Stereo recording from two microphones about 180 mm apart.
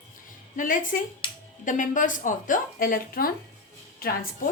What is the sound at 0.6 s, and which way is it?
A woman's voice, 50° left (ahead or behind).